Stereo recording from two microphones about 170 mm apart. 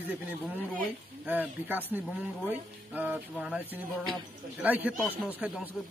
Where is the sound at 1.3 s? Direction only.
10° right (ahead or behind).